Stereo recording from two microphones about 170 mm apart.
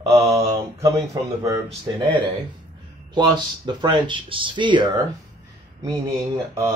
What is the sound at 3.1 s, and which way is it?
Speech, 25° right (ahead or behind).